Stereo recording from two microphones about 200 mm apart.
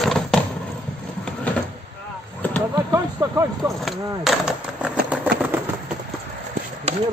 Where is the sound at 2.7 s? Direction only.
15° right (ahead or behind).